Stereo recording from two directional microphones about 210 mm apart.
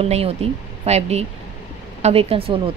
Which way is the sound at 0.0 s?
30° right (ahead or behind).